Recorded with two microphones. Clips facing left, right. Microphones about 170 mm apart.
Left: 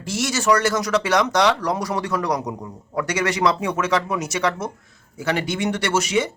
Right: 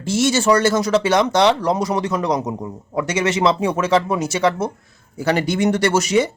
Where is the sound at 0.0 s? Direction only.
25° right (ahead or behind).